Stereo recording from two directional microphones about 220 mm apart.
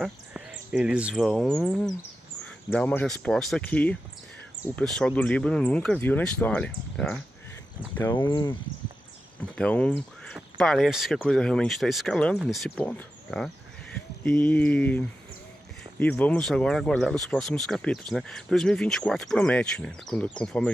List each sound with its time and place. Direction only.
0.0 s speech: 5° right (ahead or behind)
7.9 s a sound: 10° left (ahead or behind)
8.2 s speech: 20° left (ahead or behind)
9.4 s speech: 5° left (ahead or behind)
14.2 s a sound: 10° left (ahead or behind)
16.0 s speech: 5° left (ahead or behind)